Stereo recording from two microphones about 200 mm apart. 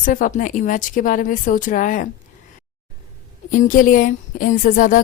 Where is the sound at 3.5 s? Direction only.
40° left (ahead or behind).